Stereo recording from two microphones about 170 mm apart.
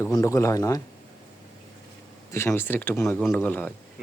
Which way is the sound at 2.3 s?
15° left (ahead or behind).